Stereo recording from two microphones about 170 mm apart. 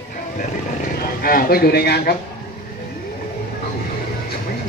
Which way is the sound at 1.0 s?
60° left (ahead or behind).